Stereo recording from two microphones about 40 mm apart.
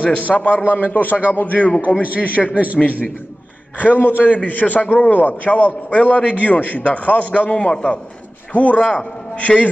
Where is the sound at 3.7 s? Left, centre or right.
Left.